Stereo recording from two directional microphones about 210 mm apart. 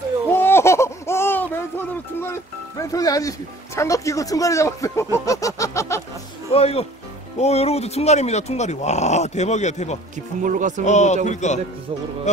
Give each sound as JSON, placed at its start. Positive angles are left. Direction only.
{"t": 0.3, "sound": "a sound", "side_deg": 10}
{"t": 2.9, "sound": "speech", "side_deg": 15}
{"t": 6.5, "sound": "speech", "side_deg": 30}
{"t": 10.1, "sound": "speech", "side_deg": -40}
{"t": 10.9, "sound": "speech", "side_deg": 35}